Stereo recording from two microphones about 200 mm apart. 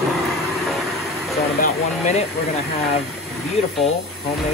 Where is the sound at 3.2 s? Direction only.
Centre (ahead or behind).